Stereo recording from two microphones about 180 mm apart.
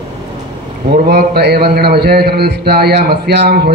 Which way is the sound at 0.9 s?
60° right (ahead or behind).